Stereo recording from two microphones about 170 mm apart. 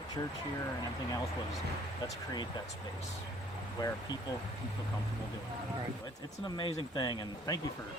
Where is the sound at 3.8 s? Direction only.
25° left (ahead or behind).